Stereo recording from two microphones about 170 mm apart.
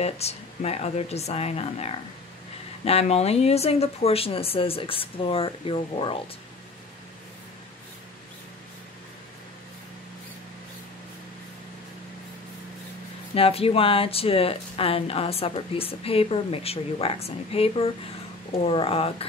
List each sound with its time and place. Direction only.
0.0 s speech: 35° left (ahead or behind)
13.3 s speech: 35° left (ahead or behind)